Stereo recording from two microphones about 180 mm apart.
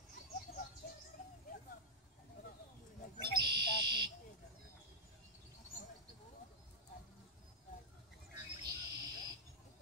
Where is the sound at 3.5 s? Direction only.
25° right (ahead or behind).